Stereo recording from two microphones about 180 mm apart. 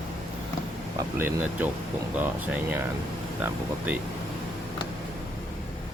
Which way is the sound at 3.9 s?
10° right (ahead or behind).